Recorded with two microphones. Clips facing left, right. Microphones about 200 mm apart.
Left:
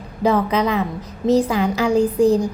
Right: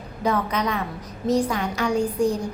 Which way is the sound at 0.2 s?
30° left (ahead or behind).